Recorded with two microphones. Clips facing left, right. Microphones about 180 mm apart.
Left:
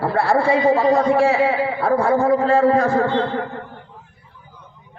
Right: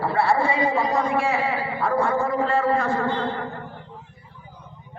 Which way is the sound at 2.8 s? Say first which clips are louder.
Left 7 dB; 40° left (ahead or behind).